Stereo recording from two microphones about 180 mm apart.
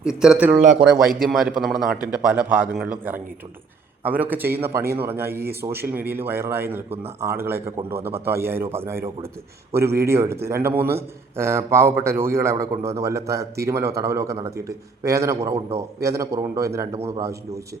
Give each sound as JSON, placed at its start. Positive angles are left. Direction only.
{"t": 0.0, "sound": "a man's voice", "side_deg": -5}